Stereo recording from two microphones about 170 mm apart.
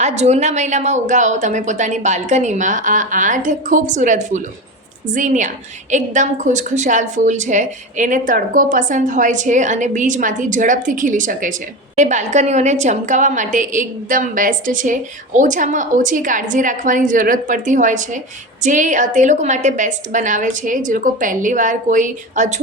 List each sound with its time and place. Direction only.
0.0 s a woman's voice: 40° right (ahead or behind)